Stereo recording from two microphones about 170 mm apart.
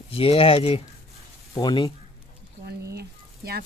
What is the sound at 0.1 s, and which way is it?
Speech, 35° left (ahead or behind).